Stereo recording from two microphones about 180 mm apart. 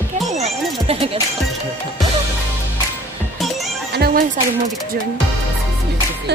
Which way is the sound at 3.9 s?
60° right (ahead or behind).